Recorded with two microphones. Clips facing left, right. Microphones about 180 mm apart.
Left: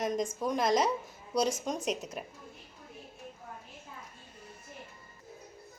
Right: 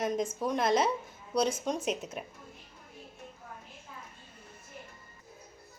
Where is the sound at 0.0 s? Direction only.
5° right (ahead or behind).